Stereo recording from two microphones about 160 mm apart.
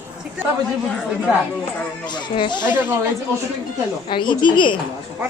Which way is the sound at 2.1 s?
30° left (ahead or behind).